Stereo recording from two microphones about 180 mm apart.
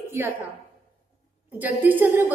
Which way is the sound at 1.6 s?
10° right (ahead or behind).